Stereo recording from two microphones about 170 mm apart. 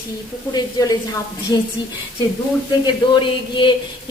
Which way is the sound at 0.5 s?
20° left (ahead or behind).